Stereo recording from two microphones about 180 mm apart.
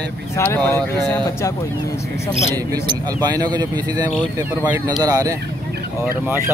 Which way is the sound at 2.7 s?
20° right (ahead or behind).